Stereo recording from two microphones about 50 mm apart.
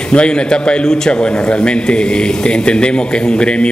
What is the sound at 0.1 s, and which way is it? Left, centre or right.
A man's voice, centre.